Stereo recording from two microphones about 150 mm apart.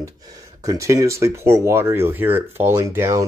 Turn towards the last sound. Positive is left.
turn(degrees=-20)  # may be behind; listen again after turning